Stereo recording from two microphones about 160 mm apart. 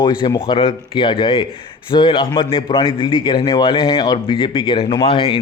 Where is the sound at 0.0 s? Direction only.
30° left (ahead or behind).